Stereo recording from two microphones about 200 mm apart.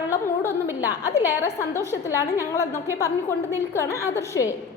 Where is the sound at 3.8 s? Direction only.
15° left (ahead or behind).